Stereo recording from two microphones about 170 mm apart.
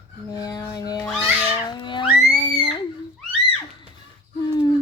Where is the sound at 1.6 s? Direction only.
30° left (ahead or behind).